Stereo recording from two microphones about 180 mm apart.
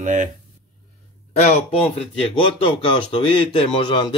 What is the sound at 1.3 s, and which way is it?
Speech, 35° left (ahead or behind).